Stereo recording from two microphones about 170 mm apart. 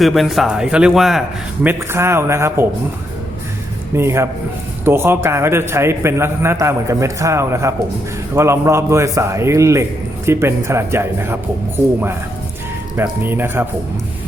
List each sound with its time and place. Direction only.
0.0 s speech: centre (ahead or behind)
1.6 s a man's voice: 15° right (ahead or behind)
3.9 s a man's voice: 15° right (ahead or behind)
13.0 s a man's voice: 10° right (ahead or behind)